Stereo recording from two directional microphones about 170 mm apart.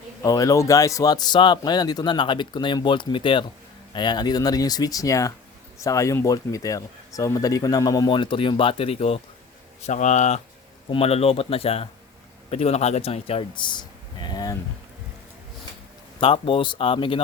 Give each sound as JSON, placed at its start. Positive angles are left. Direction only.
{"t": 0.2, "sound": "speech", "side_deg": 20}
{"t": 16.2, "sound": "speech", "side_deg": 30}